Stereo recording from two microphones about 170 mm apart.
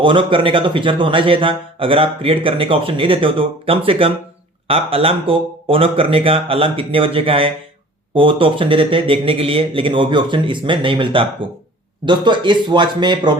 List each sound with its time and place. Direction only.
0.0 s speech: 30° right (ahead or behind)